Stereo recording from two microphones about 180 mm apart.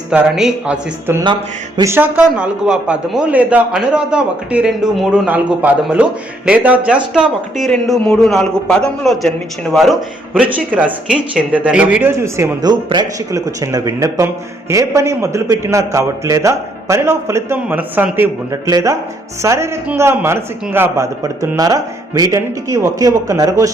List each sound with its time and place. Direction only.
0.1 s a man's voice: 5° right (ahead or behind)
1.2 s speech: 25° right (ahead or behind)
1.9 s a man's voice: 10° right (ahead or behind)